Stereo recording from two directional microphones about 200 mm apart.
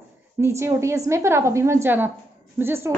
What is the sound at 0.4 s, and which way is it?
A woman's voice, 15° right (ahead or behind).